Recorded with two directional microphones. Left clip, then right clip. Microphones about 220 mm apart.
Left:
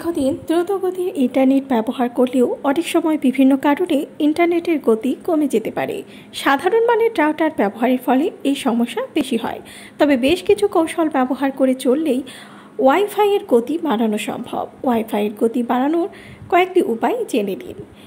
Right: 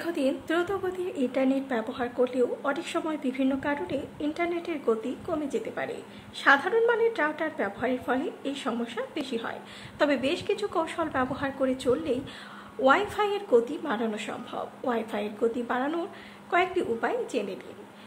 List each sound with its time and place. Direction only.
0.0 s a woman's voice: 15° left (ahead or behind)